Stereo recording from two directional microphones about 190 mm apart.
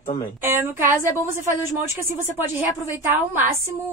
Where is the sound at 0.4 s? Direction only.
10° right (ahead or behind).